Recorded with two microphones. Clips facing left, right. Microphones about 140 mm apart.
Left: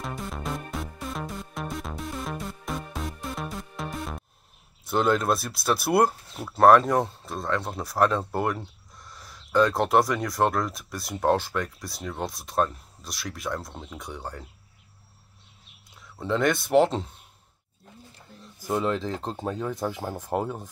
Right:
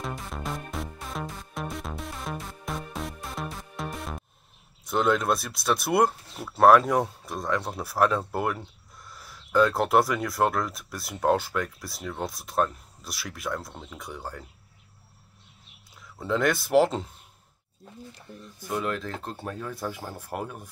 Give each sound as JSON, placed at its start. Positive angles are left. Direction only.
{"t": 0.0, "sound": "music", "side_deg": 0}
{"t": 4.8, "sound": "speech", "side_deg": 0}
{"t": 16.0, "sound": "speech", "side_deg": 0}
{"t": 18.7, "sound": "speech", "side_deg": 25}